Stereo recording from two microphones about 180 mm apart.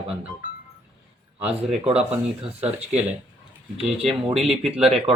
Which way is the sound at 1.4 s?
35° right (ahead or behind).